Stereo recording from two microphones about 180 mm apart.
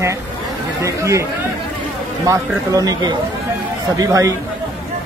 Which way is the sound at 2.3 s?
20° right (ahead or behind).